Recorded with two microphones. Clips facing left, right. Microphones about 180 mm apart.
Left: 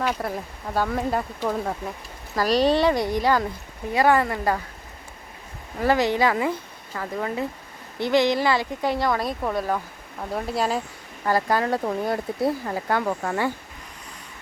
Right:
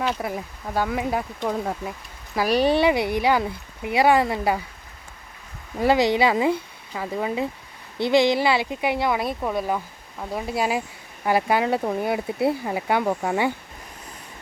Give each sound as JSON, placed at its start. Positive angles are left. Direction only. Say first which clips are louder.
{"t": 0.2, "sound": "speech", "louder": "even", "side_deg": 0}
{"t": 5.8, "sound": "speech", "louder": "right 2 dB", "side_deg": -15}